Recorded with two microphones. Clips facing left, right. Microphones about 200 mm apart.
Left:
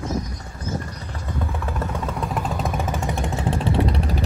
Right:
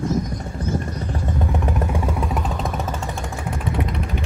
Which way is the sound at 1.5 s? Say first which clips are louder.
Right 4 dB; 15° right (ahead or behind).